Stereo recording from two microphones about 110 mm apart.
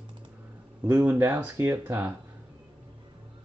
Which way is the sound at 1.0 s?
15° right (ahead or behind).